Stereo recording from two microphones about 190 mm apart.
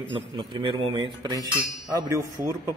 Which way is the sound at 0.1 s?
25° right (ahead or behind).